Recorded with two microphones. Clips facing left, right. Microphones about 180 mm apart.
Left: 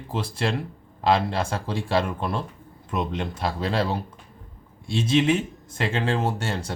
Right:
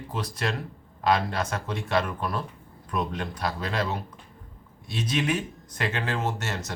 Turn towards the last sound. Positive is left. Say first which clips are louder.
# left 3 dB
turn(degrees=30)  # may be behind; listen again after turning